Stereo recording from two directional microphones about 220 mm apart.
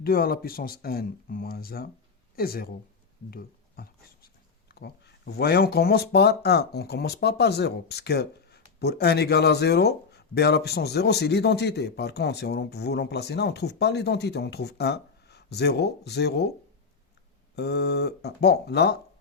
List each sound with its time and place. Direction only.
0.0 s speech: 40° left (ahead or behind)
17.5 s speech: 50° left (ahead or behind)